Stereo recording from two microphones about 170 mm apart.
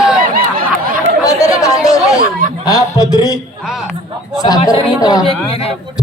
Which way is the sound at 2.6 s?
20° left (ahead or behind).